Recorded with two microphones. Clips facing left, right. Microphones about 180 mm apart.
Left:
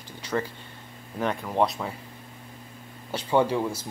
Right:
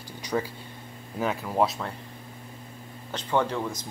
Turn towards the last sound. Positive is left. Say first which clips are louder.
# left 3 dB
turn(degrees=10)  # may be behind; listen again after turning